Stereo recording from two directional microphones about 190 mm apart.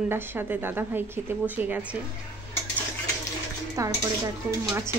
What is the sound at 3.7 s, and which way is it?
Speech, 15° right (ahead or behind).